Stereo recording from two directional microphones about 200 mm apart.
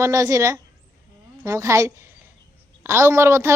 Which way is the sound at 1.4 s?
15° right (ahead or behind).